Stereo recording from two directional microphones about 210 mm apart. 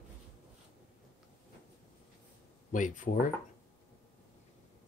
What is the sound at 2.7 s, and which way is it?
Speech, 40° left (ahead or behind).